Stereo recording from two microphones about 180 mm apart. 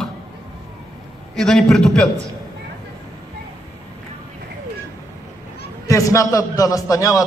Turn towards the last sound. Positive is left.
turn(degrees=20)  # may be behind; listen again after turning